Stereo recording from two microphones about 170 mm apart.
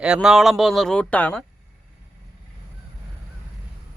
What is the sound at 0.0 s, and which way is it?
Speech, 5° right (ahead or behind).